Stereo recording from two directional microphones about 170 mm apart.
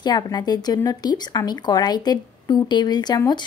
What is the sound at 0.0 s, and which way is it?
A woman's voice, 25° left (ahead or behind).